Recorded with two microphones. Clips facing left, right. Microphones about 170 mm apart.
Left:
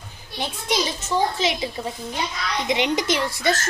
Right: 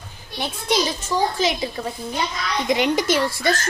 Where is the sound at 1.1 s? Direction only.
25° left (ahead or behind).